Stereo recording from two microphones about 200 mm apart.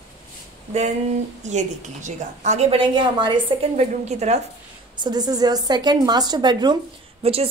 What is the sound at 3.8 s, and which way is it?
Speech, 35° right (ahead or behind).